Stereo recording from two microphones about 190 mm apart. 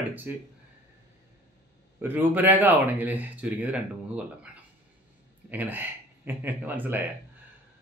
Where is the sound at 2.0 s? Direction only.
10° right (ahead or behind).